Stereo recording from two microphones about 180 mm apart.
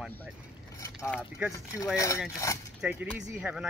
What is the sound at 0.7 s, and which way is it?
Speech, 15° left (ahead or behind).